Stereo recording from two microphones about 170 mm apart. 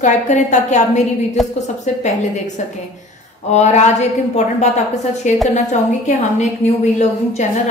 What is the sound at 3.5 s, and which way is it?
A woman's voice, 40° left (ahead or behind).